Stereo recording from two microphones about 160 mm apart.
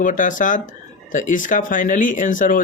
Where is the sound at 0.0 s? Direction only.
55° left (ahead or behind).